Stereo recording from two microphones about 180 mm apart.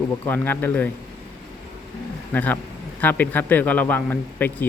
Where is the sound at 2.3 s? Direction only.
10° left (ahead or behind).